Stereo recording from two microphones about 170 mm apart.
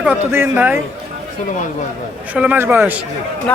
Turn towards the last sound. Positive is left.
turn(degrees=10)  # may be behind; listen again after turning